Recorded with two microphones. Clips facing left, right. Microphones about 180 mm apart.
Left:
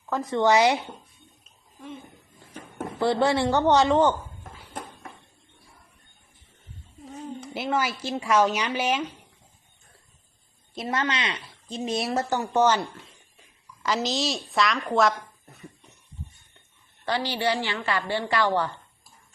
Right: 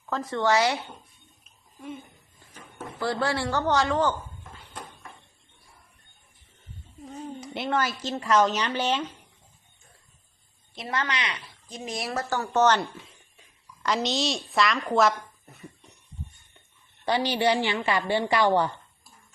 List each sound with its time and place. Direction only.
0.0 s speech: 15° left (ahead or behind)
3.0 s speech: 20° left (ahead or behind)
7.0 s a sound: centre (ahead or behind)
8.0 s speech: 10° left (ahead or behind)
10.8 s a woman's voice: 25° left (ahead or behind); by 16.0 s centre (ahead or behind)
17.1 s a woman's voice: 15° right (ahead or behind)